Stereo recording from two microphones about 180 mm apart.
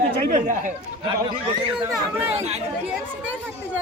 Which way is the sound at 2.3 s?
40° right (ahead or behind).